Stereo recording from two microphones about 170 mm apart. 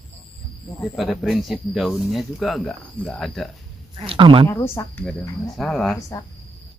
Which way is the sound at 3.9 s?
30° right (ahead or behind).